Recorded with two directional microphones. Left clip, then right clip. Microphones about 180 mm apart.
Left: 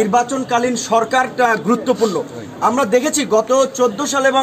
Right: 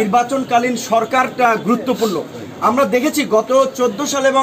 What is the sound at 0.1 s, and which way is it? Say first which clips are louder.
Speech: right 1 dB; 5° left (ahead or behind).